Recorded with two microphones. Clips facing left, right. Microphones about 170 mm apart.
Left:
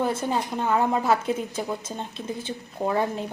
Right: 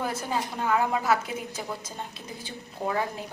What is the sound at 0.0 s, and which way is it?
A woman's voice, 25° left (ahead or behind).